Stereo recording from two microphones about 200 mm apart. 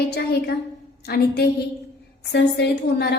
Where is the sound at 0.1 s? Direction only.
50° left (ahead or behind).